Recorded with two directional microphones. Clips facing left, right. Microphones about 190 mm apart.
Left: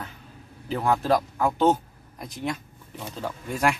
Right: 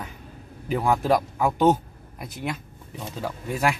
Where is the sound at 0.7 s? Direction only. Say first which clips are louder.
Right 1 dB; 10° right (ahead or behind).